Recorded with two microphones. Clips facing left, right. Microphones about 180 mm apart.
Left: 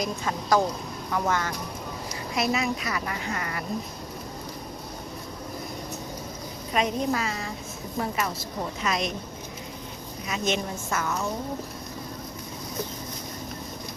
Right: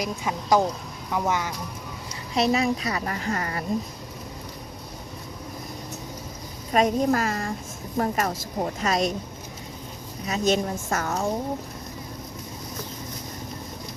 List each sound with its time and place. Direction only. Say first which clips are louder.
0.0 s speech: even; 15° right (ahead or behind)
2.3 s a woman's voice: right 4 dB; 35° right (ahead or behind)
6.7 s speech: right 5 dB; 45° right (ahead or behind)
10.2 s a woman's voice: right 5 dB; 40° right (ahead or behind)